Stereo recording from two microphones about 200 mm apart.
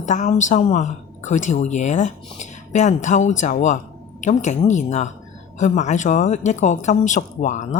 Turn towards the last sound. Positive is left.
turn(degrees=40)  # may be behind; listen again after turning